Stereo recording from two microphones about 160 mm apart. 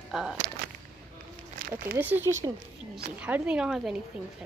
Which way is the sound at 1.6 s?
60° right (ahead or behind).